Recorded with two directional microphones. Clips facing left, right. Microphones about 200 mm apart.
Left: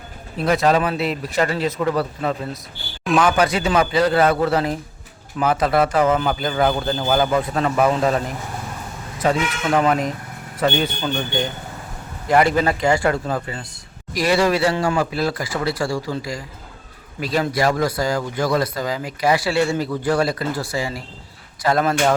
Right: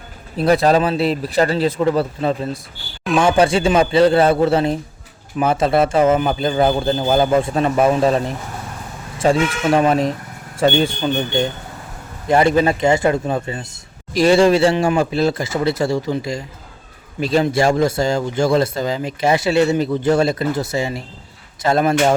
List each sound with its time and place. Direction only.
0.4 s speech: 35° right (ahead or behind)